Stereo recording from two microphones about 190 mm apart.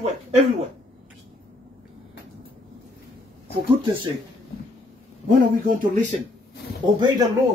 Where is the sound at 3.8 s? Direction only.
25° right (ahead or behind).